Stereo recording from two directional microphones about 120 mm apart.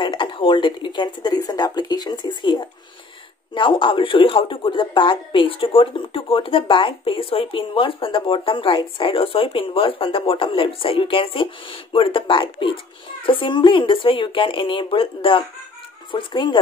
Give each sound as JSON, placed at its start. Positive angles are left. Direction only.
{"t": 0.0, "sound": "speech", "side_deg": 45}